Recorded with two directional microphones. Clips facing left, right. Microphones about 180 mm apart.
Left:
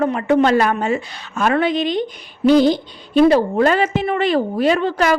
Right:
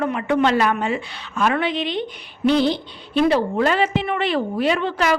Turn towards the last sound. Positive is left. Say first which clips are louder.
# left 4 dB
turn(degrees=45)  # may be behind; listen again after turning